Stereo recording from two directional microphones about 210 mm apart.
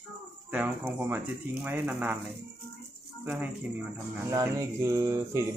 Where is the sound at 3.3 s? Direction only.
5° right (ahead or behind).